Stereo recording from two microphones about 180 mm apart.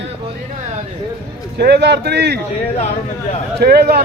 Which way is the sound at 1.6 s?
70° right (ahead or behind).